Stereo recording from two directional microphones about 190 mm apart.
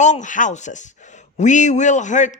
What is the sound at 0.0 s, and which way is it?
A man's voice, 40° left (ahead or behind).